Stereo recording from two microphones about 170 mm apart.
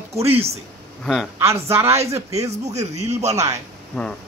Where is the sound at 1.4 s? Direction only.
15° right (ahead or behind).